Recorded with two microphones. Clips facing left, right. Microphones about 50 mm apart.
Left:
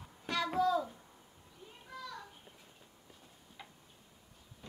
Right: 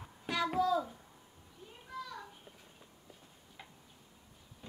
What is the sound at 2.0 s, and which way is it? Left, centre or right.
Children playing, centre.